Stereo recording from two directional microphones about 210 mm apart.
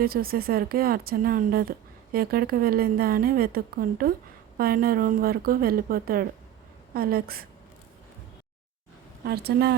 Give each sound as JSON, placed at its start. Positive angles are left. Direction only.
{"t": 0.0, "sound": "a woman's voice", "side_deg": -45}
{"t": 9.2, "sound": "a woman's voice", "side_deg": -50}